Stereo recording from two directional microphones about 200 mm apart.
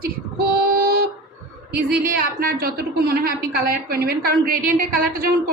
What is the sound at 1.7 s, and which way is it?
A woman's voice, 50° right (ahead or behind).